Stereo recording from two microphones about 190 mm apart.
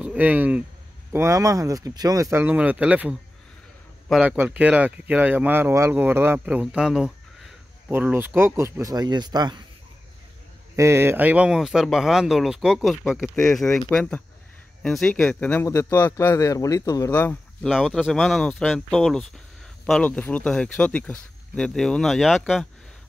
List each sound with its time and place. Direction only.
0.0 s speech: 5° right (ahead or behind); by 9.7 s 20° right (ahead or behind)
10.8 s speech: 15° right (ahead or behind)